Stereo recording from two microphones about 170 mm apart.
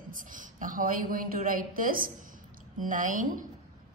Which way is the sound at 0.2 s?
50° right (ahead or behind).